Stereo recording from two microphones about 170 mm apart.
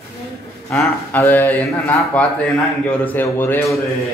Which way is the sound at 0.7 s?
10° left (ahead or behind).